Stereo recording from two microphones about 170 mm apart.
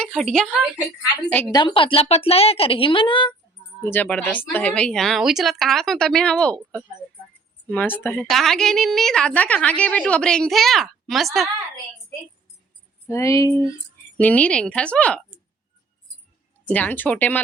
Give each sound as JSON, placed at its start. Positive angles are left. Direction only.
{"t": 0.0, "sound": "a woman's voice", "side_deg": 0}
{"t": 1.5, "sound": "a woman's voice", "side_deg": 25}
{"t": 3.8, "sound": "a woman's voice", "side_deg": 10}
{"t": 7.7, "sound": "a woman's voice", "side_deg": 10}
{"t": 13.1, "sound": "a sound", "side_deg": 15}
{"t": 14.2, "sound": "speech", "side_deg": 10}
{"t": 16.6, "sound": "speech", "side_deg": 10}